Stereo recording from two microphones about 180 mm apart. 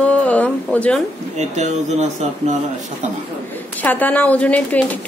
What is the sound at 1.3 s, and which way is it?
Speech, 40° right (ahead or behind).